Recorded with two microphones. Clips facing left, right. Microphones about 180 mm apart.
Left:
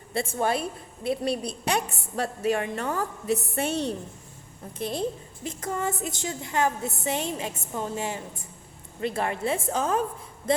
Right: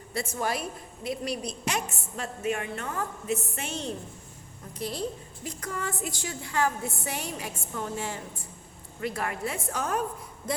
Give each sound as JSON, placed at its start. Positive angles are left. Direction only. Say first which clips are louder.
{"t": 0.1, "sound": "a woman's voice", "louder": "left 4 dB", "side_deg": 25}
{"t": 3.7, "sound": "a woman's voice", "louder": "left 5 dB", "side_deg": 65}
{"t": 4.8, "sound": "a woman's voice", "louder": "left 3 dB", "side_deg": 25}